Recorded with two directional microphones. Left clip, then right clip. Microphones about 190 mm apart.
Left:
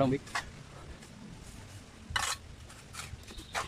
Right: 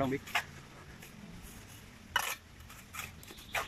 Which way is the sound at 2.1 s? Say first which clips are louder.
Left 1 dB; 15° right (ahead or behind).